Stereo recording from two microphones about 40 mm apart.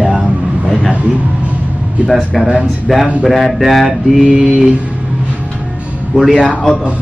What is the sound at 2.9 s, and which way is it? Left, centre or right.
A man's voice, centre.